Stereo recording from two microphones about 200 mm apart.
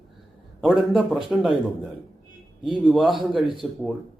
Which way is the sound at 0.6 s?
Centre (ahead or behind).